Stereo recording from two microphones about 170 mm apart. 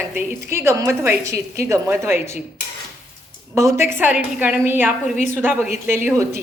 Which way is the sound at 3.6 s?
15° right (ahead or behind).